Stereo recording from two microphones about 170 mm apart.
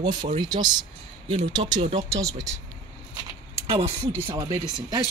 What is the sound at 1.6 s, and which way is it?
Speech, 40° right (ahead or behind).